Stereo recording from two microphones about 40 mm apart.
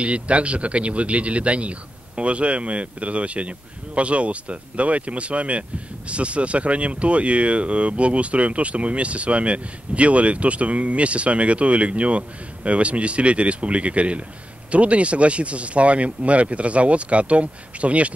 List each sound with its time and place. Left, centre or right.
0.0 s speech: right